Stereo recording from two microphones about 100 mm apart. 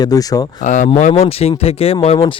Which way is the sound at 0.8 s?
90° left.